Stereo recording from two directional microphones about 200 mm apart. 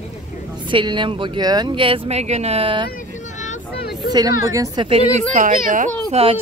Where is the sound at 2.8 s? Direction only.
40° left (ahead or behind).